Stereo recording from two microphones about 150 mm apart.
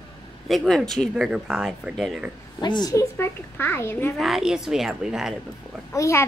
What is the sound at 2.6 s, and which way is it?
A child's voice, 30° left (ahead or behind).